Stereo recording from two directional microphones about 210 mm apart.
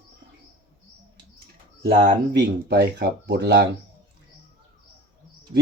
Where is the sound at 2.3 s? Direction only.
55° right (ahead or behind).